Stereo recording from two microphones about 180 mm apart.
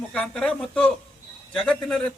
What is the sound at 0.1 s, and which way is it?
A man's voice, 5° left (ahead or behind).